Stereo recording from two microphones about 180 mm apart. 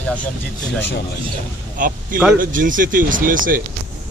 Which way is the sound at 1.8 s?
50° right (ahead or behind).